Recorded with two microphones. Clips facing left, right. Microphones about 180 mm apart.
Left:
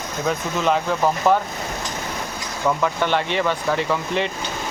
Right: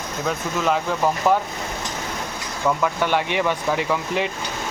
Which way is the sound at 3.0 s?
10° right (ahead or behind).